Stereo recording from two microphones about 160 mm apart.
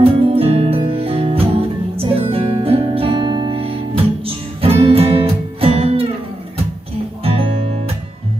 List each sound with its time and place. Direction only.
0.0 s music: 35° right (ahead or behind)
7.2 s music: 35° right (ahead or behind)